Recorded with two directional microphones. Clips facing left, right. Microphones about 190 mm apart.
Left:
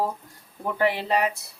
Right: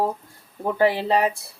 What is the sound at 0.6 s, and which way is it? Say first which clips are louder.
Speech: right 4 dB; 30° right (ahead or behind).